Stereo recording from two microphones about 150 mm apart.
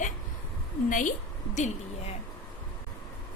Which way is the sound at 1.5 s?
50° left (ahead or behind).